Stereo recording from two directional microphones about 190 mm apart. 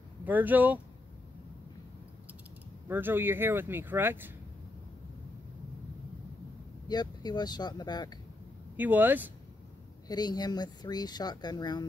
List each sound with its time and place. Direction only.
0.2 s speech: 10° right (ahead or behind)
2.9 s speech: 10° right (ahead or behind)
6.9 s speech: 20° left (ahead or behind)
8.7 s speech: 10° right (ahead or behind)
10.0 s speech: 20° left (ahead or behind)